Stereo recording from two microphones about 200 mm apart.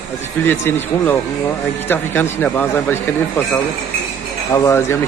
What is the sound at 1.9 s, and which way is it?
Speech, 10° left (ahead or behind).